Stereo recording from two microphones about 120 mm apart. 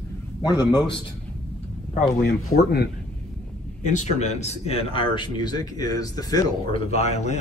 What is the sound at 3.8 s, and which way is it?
Speech, 80° left.